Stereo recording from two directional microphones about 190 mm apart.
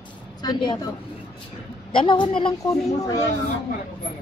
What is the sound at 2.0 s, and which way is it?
A woman's voice, 25° left (ahead or behind).